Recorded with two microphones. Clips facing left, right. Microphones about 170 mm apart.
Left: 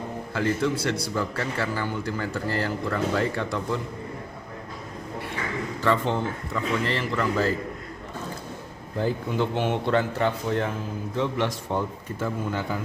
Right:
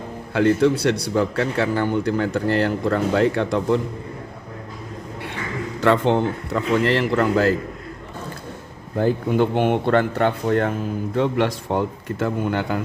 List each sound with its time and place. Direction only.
0.3 s speech: 65° right (ahead or behind)
5.8 s a man's voice: 70° right (ahead or behind)
9.0 s speech: 55° right (ahead or behind)